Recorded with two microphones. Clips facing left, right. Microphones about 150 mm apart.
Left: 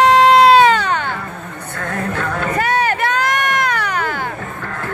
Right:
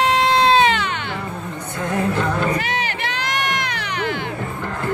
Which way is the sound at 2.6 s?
45° left (ahead or behind).